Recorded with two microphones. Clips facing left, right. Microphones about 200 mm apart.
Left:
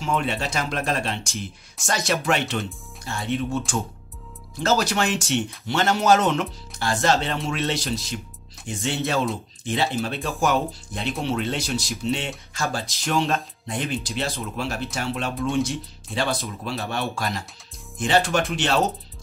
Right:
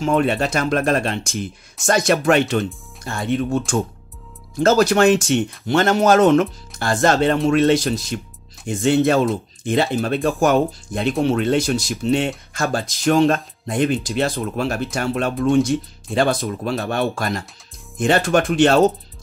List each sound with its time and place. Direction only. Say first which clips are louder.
0.0 s speech: right 7 dB; 50° right (ahead or behind)